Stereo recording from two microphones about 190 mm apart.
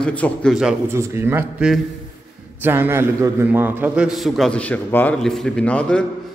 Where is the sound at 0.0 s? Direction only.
5° left (ahead or behind).